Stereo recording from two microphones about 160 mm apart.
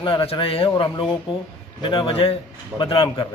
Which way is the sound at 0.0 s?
35° left (ahead or behind).